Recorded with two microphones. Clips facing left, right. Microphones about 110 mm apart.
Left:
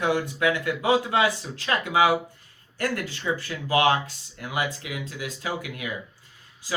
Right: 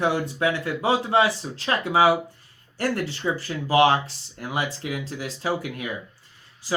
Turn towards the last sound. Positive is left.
turn(degrees=-30)  # may be behind; listen again after turning